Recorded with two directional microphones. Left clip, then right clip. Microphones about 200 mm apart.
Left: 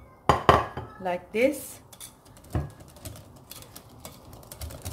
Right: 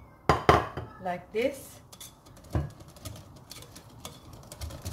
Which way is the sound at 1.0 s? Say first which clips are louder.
Left 5 dB; 55° left (ahead or behind).